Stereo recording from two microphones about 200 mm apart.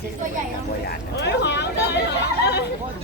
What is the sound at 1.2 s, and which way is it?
Vehicle, 55° left (ahead or behind).